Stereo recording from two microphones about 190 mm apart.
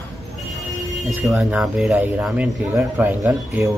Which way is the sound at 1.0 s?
Centre (ahead or behind).